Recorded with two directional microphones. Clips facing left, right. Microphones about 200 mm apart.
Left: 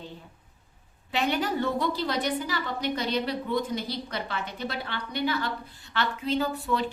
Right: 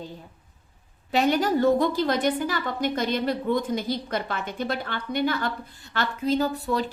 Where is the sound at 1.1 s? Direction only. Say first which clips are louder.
Right 5 dB; 40° right (ahead or behind).